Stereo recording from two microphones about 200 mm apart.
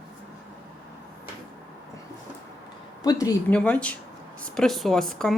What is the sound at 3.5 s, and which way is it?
Speech, 5° left (ahead or behind).